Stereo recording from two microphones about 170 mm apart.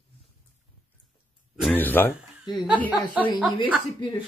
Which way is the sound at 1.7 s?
10° left (ahead or behind).